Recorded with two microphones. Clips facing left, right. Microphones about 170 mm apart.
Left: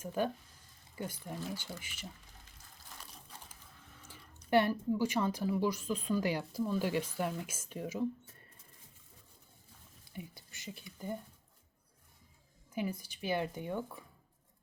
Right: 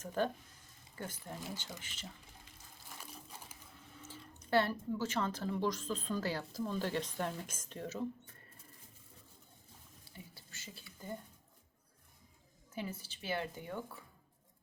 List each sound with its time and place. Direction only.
0.0 s speech: 10° left (ahead or behind)
3.0 s crumpling: 10° right (ahead or behind)
4.1 s speech: 15° left (ahead or behind)
10.1 s speech: 15° left (ahead or behind)
12.7 s speech: 15° left (ahead or behind)